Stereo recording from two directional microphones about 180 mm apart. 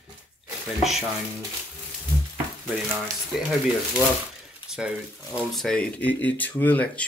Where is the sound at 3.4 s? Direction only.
5° right (ahead or behind).